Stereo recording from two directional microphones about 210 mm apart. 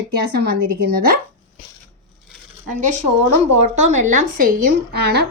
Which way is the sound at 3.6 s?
35° right (ahead or behind).